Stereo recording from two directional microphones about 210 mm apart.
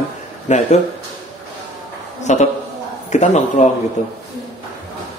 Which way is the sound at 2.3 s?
35° left (ahead or behind).